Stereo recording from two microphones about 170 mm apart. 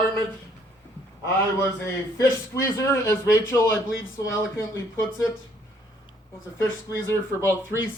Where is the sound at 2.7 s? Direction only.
20° left (ahead or behind).